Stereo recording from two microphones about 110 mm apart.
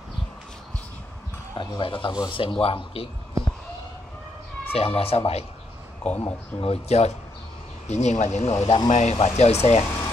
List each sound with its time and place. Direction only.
1.6 s speech: 50° left (ahead or behind)
4.7 s speech: 60° left (ahead or behind)
6.0 s speech: 15° left (ahead or behind)
6.6 s speech: 70° left (ahead or behind)
7.9 s speech: 90° left; by 8.8 s 70° left (ahead or behind)
8.9 s speech: 85° left